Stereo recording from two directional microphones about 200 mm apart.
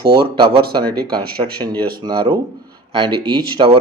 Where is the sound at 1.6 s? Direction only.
20° right (ahead or behind).